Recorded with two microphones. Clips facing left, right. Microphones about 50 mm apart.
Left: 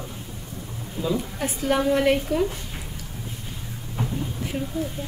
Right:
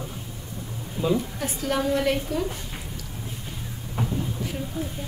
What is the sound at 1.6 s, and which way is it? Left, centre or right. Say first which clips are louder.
Speech: left 3 dB; left.